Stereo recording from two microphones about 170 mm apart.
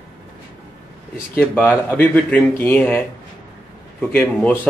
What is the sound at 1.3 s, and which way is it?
Speech, 10° left (ahead or behind).